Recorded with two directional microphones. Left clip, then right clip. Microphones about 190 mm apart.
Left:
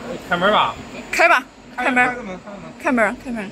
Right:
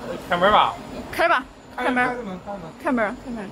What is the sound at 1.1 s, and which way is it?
A woman's voice, 10° left (ahead or behind).